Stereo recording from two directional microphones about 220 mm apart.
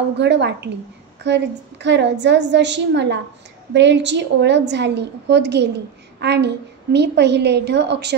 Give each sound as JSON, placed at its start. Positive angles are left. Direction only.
{"t": 0.2, "sound": "a woman's voice", "side_deg": -50}